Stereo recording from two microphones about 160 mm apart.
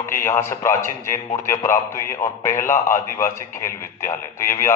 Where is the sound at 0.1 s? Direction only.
15° left (ahead or behind).